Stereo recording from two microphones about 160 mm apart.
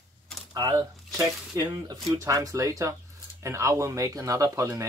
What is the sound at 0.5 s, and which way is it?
Speech, 25° right (ahead or behind).